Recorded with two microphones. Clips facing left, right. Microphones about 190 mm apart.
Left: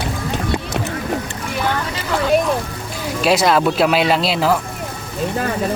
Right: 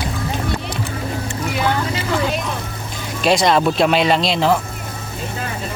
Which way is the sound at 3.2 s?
5° left (ahead or behind).